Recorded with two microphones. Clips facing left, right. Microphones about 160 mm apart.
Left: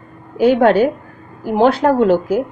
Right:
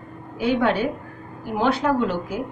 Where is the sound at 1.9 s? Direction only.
40° left (ahead or behind).